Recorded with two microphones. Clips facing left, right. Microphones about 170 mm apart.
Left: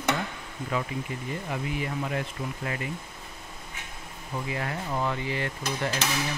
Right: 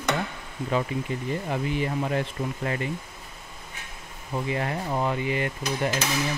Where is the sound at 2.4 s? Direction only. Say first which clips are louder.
Right 4 dB; 40° right (ahead or behind).